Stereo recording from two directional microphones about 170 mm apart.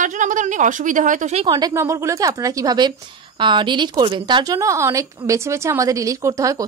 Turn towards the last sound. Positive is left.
turn(degrees=-20)  # may be behind; listen again after turning